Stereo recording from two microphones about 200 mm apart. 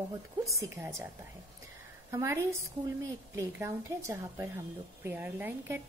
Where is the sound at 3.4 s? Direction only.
15° right (ahead or behind).